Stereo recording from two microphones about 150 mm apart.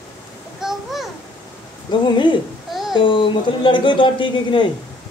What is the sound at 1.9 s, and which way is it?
Speech, 30° left (ahead or behind).